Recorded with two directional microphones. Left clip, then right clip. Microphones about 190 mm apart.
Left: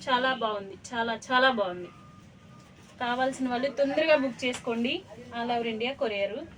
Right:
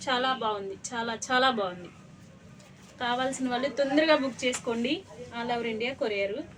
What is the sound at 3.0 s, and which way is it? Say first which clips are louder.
A woman's voice: left 1 dB; 20° right (ahead or behind).